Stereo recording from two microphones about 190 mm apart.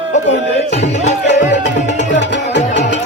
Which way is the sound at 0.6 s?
40° left (ahead or behind).